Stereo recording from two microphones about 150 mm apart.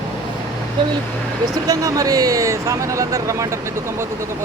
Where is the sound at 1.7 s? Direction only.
25° right (ahead or behind).